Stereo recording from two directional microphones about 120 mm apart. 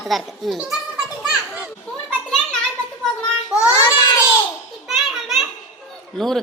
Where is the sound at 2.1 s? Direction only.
10° left (ahead or behind).